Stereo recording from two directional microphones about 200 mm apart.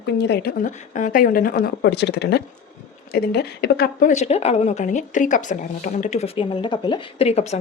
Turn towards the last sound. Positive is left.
turn(degrees=30)  # may be behind; listen again after turning